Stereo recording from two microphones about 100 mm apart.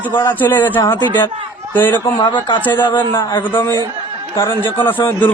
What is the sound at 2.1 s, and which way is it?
Speech, 50° left (ahead or behind).